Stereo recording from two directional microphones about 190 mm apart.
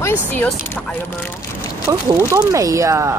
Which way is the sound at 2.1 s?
15° right (ahead or behind).